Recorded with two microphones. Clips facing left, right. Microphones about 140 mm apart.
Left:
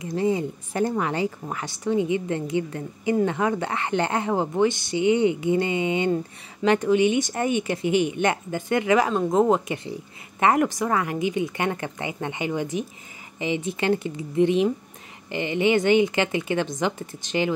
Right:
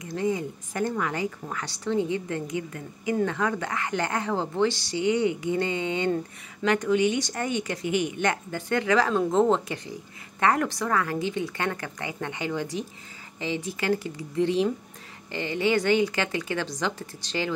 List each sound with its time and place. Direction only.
0.0 s a woman's voice: 20° left (ahead or behind)